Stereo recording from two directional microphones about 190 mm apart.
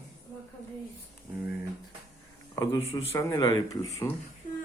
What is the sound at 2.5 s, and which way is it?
A man's voice, 20° left (ahead or behind).